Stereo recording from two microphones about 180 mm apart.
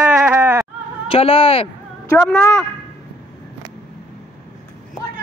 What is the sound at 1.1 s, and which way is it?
Speech, 30° left (ahead or behind).